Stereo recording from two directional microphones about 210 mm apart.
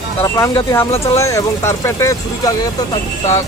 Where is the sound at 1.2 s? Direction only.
15° left (ahead or behind).